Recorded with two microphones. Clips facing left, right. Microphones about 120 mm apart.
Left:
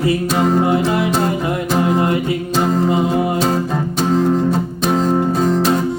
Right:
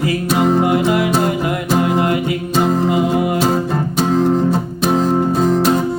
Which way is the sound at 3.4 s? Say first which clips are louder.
Right 1 dB; centre (ahead or behind).